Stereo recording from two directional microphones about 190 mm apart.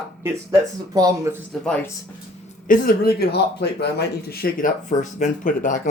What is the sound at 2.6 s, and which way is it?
Speech, 50° left (ahead or behind).